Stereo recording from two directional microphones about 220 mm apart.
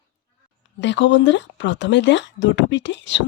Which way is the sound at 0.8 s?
55° left (ahead or behind).